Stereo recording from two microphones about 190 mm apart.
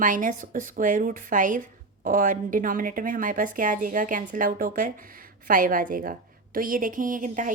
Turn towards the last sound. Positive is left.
turn(degrees=-45)  # may be behind; listen again after turning